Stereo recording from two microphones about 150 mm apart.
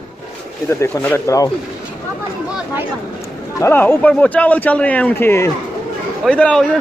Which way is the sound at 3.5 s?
15° left (ahead or behind).